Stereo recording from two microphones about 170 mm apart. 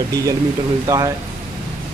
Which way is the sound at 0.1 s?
20° right (ahead or behind).